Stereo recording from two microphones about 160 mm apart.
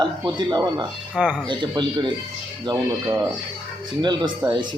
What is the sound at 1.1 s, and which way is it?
Speech, 5° right (ahead or behind).